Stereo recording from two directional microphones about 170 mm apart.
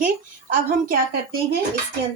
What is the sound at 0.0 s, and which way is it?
Speech, 50° right (ahead or behind).